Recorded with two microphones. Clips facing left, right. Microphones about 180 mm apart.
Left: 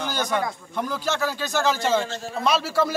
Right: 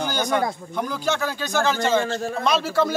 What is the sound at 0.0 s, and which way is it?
A man's voice, centre (ahead or behind).